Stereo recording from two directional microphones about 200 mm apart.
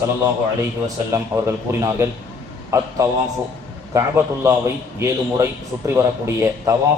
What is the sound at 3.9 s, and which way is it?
A man's voice, 15° right (ahead or behind).